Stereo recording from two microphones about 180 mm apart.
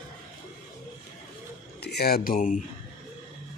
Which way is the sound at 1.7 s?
65° left (ahead or behind).